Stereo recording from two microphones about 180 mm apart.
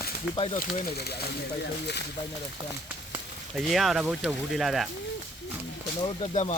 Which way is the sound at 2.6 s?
25° right (ahead or behind).